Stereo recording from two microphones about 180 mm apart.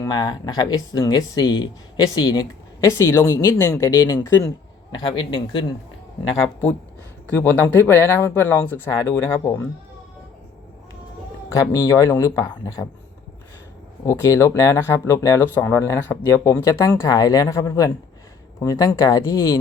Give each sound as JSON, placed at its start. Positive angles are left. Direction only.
{"t": 0.0, "sound": "speech", "side_deg": 25}
{"t": 7.3, "sound": "speech", "side_deg": 10}
{"t": 11.4, "sound": "speech", "side_deg": 20}
{"t": 14.0, "sound": "speech", "side_deg": 15}